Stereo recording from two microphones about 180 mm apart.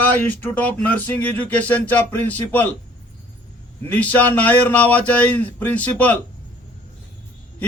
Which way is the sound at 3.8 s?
10° left (ahead or behind).